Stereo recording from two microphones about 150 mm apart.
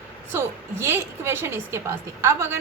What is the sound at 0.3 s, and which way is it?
A woman's voice, 15° right (ahead or behind).